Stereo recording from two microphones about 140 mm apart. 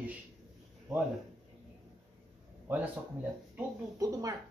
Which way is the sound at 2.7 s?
15° right (ahead or behind).